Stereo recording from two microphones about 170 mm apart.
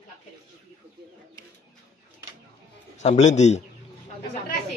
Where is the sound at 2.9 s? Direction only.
45° left (ahead or behind).